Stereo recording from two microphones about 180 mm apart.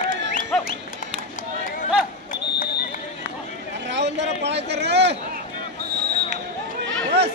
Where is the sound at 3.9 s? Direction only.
75° right (ahead or behind).